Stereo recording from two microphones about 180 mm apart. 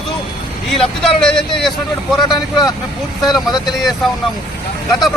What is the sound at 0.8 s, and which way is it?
Speech, 5° left (ahead or behind).